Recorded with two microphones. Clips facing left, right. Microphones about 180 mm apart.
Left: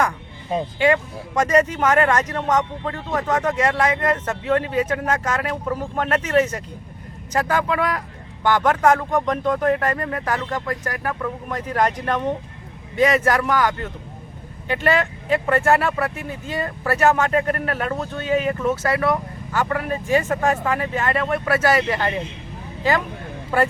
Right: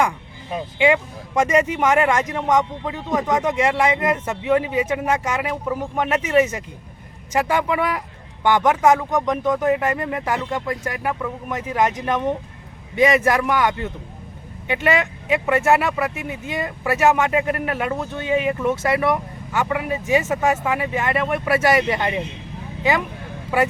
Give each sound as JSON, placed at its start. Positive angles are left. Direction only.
{"t": 1.4, "sound": "speech", "side_deg": -10}
{"t": 14.7, "sound": "speech", "side_deg": -10}